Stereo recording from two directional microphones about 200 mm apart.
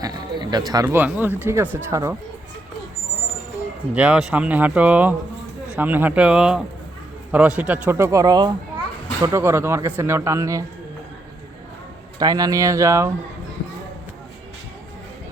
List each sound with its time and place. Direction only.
0.0 s music: 20° right (ahead or behind)
0.7 s speech: 15° right (ahead or behind)
3.9 s speech: 5° right (ahead or behind)
12.2 s speech: 20° right (ahead or behind)